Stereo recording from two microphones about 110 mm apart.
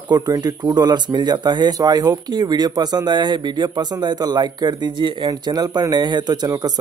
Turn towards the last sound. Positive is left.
turn(degrees=-35)  # may be behind; listen again after turning